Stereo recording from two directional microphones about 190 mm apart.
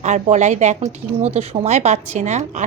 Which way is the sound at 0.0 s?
40° right (ahead or behind).